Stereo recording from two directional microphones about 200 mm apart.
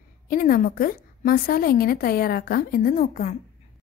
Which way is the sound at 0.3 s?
45° left (ahead or behind).